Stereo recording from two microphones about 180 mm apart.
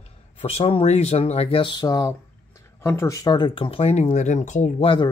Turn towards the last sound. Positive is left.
turn(degrees=40)  # may be behind; listen again after turning